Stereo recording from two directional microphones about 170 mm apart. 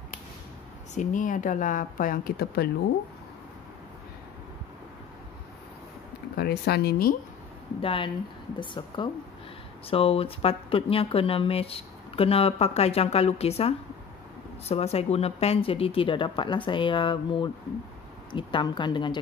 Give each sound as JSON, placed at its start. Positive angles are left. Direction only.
{"t": 0.9, "sound": "speech", "side_deg": 50}
{"t": 6.3, "sound": "speech", "side_deg": 70}
{"t": 7.8, "sound": "a woman's voice", "side_deg": 30}